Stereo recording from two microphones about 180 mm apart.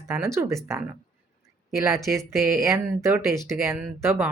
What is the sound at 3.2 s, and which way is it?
Speech, centre (ahead or behind).